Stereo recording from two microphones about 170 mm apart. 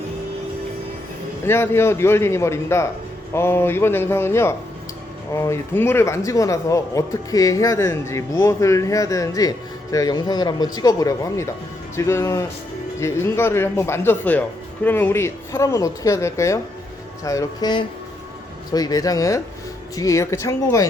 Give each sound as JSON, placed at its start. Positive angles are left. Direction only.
{"t": 1.5, "sound": "speech", "side_deg": 15}